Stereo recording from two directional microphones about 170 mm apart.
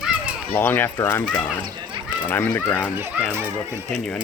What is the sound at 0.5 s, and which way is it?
Speech, 10° left (ahead or behind).